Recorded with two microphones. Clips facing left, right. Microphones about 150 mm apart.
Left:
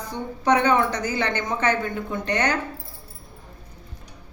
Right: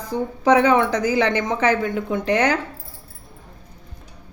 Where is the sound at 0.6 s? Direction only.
90° right.